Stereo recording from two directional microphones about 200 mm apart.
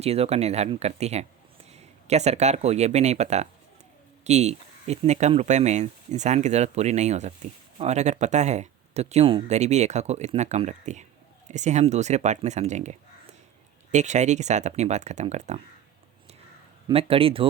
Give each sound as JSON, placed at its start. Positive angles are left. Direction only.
{"t": 0.0, "sound": "speech", "side_deg": -30}
{"t": 16.9, "sound": "speech", "side_deg": -30}